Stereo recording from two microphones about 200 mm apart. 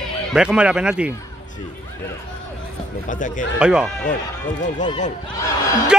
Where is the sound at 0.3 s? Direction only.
5° right (ahead or behind).